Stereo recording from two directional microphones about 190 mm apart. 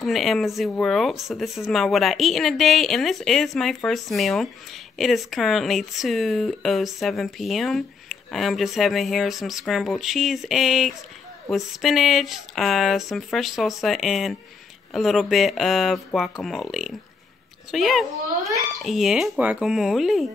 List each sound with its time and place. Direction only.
0.0 s speech: centre (ahead or behind)